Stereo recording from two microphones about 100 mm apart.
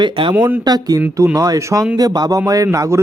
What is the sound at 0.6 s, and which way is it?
Speech, 40° right (ahead or behind).